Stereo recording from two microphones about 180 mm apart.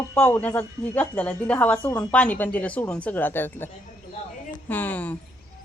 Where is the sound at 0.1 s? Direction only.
10° left (ahead or behind).